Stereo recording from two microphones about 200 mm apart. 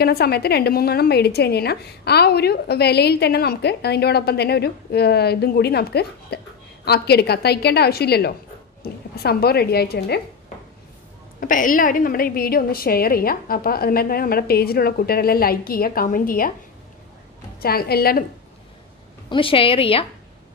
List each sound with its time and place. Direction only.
0.0 s a woman's voice: 50° left (ahead or behind)
11.3 s a woman's voice: 40° left (ahead or behind)
17.6 s a woman's voice: 50° left (ahead or behind)
19.2 s a woman's voice: 25° left (ahead or behind)